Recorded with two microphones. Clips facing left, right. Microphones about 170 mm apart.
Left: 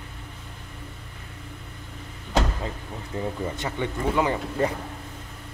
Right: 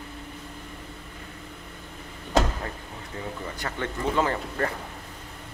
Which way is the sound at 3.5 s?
15° left (ahead or behind).